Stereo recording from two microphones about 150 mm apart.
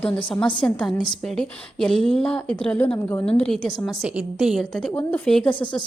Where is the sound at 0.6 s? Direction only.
5° left (ahead or behind).